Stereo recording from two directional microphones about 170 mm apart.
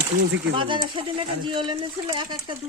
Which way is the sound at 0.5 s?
30° right (ahead or behind).